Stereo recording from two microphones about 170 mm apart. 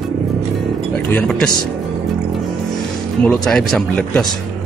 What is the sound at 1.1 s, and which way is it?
Speech, 5° left (ahead or behind).